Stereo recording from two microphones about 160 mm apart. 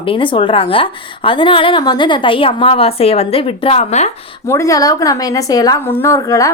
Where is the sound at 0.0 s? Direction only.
30° left (ahead or behind).